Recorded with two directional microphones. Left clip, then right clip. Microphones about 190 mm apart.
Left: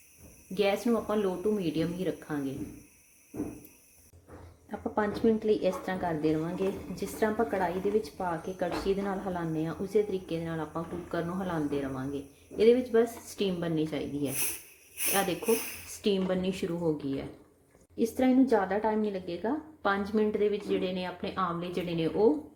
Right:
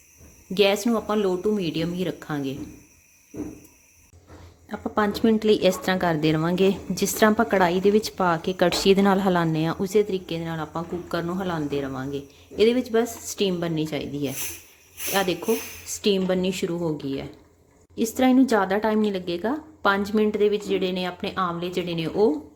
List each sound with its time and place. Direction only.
0.5 s speech: 40° right (ahead or behind)
4.7 s speech: 30° right (ahead or behind)
16.0 s speech: 25° right (ahead or behind)